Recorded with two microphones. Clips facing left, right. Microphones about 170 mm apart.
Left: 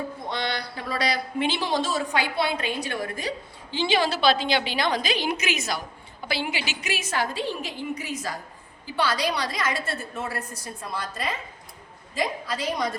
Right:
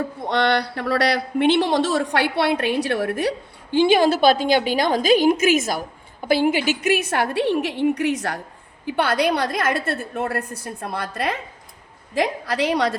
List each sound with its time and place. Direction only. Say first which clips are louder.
0.3 s speech: right 12 dB; 65° right (ahead or behind)
8.9 s a woman's voice: right 6 dB; 55° right (ahead or behind); by 13.0 s 75° right (ahead or behind)